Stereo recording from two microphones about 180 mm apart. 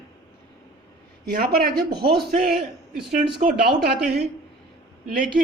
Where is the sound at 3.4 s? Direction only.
40° right (ahead or behind).